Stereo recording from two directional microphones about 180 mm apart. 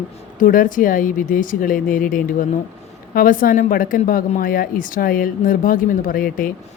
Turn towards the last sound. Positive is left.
turn(degrees=50)  # may be behind; listen again after turning